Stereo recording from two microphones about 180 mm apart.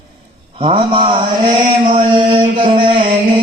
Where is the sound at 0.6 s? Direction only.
30° right (ahead or behind).